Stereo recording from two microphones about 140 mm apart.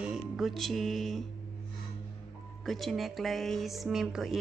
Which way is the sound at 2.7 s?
Centre (ahead or behind).